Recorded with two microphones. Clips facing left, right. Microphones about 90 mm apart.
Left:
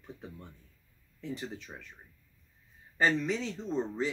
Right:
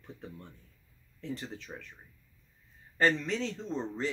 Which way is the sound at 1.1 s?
5° left (ahead or behind).